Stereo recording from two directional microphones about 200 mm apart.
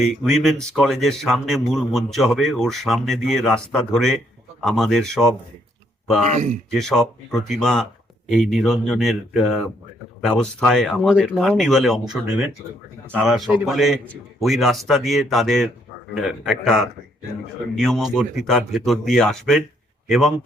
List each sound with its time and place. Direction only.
0.0 s a man's voice: centre (ahead or behind)
6.2 s speech: 35° right (ahead or behind)
6.7 s a man's voice: centre (ahead or behind)